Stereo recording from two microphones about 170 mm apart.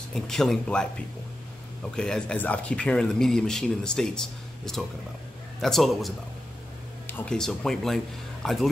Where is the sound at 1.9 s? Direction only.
5° left (ahead or behind).